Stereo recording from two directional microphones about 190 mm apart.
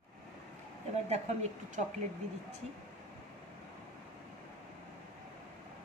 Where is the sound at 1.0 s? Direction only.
35° right (ahead or behind).